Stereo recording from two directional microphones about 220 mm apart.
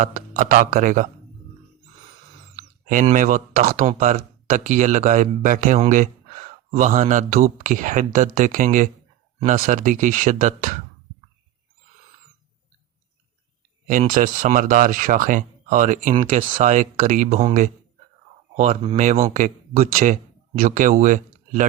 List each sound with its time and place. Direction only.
0.0 s speech: 35° right (ahead or behind)
2.6 s speech: 35° right (ahead or behind)
13.8 s speech: 35° right (ahead or behind)